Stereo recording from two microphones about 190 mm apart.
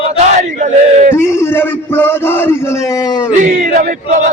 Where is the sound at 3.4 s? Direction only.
45° right (ahead or behind).